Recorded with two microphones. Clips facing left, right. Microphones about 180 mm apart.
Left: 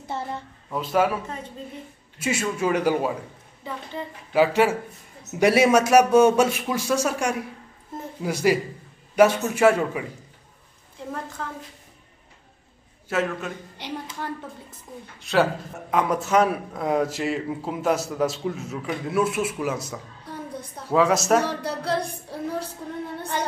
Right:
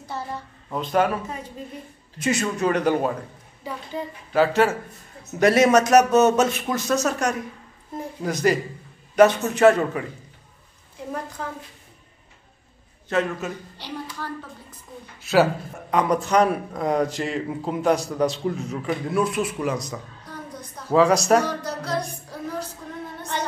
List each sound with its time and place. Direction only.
0.0 s a sound: 25° left (ahead or behind)
0.7 s a man's voice: 5° left (ahead or behind)
4.3 s a man's voice: 10° left (ahead or behind)
11.4 s a woman's voice: 10° right (ahead or behind)
13.1 s a man's voice: 5° left (ahead or behind)
13.7 s music: 20° left (ahead or behind)
15.1 s a man's voice: 5° right (ahead or behind)
21.5 s music: 30° left (ahead or behind)